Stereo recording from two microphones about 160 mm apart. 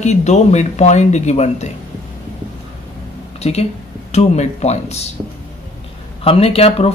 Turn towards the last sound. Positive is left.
turn(degrees=40)  # may be behind; listen again after turning